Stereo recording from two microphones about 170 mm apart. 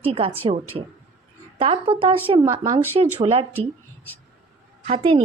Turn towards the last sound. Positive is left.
turn(degrees=-30)  # may be behind; listen again after turning